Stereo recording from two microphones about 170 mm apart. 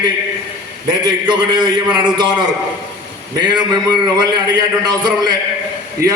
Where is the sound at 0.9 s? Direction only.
25° right (ahead or behind).